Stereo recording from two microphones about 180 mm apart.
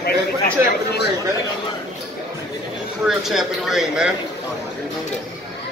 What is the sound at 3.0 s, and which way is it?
Speech, centre (ahead or behind).